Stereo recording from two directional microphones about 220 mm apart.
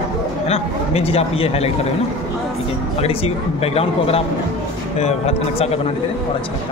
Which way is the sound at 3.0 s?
25° left (ahead or behind).